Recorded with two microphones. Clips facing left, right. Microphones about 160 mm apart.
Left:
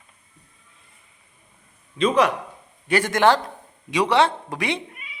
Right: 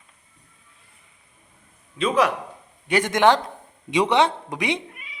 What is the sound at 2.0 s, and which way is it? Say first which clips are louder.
Speech: left 2 dB; 5° right (ahead or behind).